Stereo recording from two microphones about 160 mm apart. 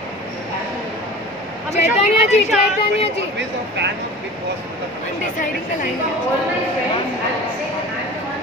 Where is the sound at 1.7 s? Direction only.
40° left (ahead or behind).